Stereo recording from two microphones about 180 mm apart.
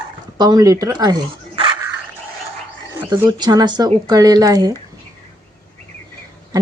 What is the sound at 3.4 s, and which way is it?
A woman's voice, 20° right (ahead or behind).